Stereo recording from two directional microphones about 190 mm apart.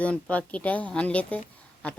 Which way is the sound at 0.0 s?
5° left (ahead or behind).